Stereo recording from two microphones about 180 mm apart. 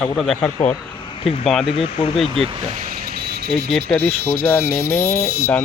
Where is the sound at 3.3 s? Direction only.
60° right (ahead or behind).